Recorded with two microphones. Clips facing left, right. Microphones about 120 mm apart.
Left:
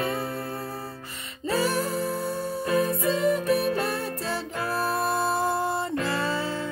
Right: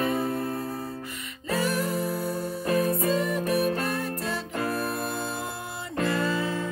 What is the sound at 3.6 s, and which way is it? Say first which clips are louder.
Music: even; 30° left (ahead or behind).